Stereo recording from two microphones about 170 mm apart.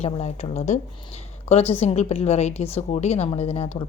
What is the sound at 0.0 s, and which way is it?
A woman's voice, 40° left (ahead or behind).